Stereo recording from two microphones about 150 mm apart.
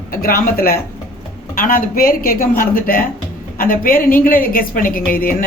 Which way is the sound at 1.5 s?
70° left (ahead or behind).